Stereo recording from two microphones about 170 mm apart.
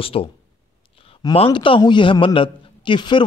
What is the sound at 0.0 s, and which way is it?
A man's voice, 35° left (ahead or behind).